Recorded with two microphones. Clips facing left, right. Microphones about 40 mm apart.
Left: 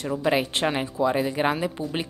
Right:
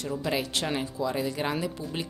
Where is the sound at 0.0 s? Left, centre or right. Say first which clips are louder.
Left 6 dB; left.